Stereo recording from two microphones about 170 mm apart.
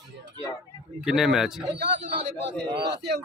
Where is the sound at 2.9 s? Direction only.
80° right.